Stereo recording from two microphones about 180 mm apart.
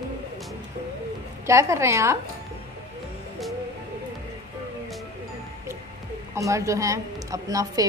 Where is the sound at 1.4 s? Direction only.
15° right (ahead or behind).